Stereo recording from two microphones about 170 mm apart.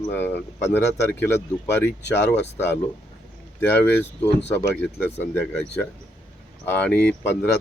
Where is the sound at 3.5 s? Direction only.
10° left (ahead or behind).